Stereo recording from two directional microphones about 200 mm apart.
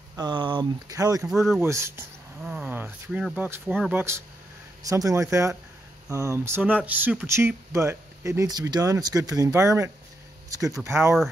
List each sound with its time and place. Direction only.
0.1 s speech: 20° right (ahead or behind)
1.2 s speech: centre (ahead or behind)
1.6 s speech: 15° right (ahead or behind)